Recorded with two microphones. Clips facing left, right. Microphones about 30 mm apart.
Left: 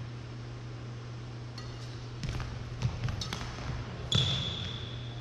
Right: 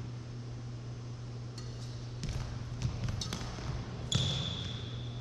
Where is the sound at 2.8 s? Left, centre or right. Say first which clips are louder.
Left 3 dB; centre.